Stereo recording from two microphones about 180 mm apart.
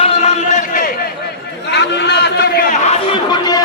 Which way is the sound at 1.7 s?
65° left (ahead or behind).